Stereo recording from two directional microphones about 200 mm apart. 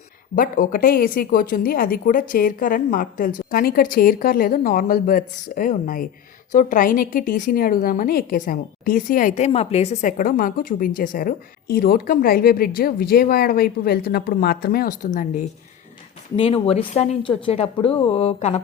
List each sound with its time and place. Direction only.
0.3 s a woman's voice: 45° left (ahead or behind)
16.3 s speech: 30° left (ahead or behind)